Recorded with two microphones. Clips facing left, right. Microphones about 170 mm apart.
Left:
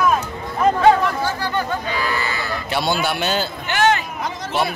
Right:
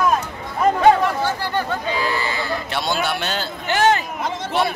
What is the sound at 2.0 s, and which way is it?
Sheep, 25° right (ahead or behind).